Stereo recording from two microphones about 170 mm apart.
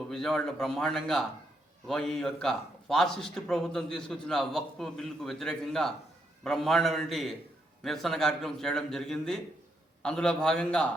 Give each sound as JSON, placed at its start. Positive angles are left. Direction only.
{"t": 0.1, "sound": "a man's voice", "side_deg": 5}